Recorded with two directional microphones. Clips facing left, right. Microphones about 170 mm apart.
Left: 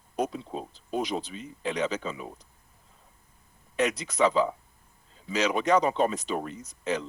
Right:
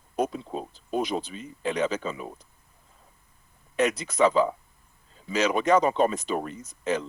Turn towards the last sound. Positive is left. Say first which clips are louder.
# right 2 dB
turn(degrees=-50)  # may be behind; listen again after turning